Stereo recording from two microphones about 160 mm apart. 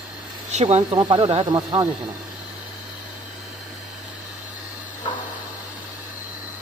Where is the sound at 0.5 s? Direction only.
40° right (ahead or behind); by 1.8 s 20° right (ahead or behind).